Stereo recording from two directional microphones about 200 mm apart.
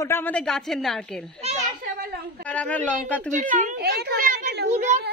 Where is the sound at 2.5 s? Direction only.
5° left (ahead or behind).